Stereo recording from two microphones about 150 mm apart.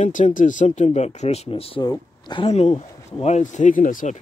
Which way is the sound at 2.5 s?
45° left (ahead or behind).